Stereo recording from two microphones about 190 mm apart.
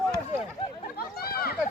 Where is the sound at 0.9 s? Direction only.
50° left (ahead or behind).